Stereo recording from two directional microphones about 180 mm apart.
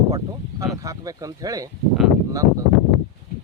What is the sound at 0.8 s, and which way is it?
Speech, 20° right (ahead or behind).